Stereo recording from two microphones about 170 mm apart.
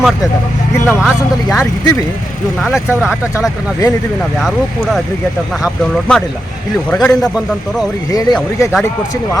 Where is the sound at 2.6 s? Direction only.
Centre (ahead or behind).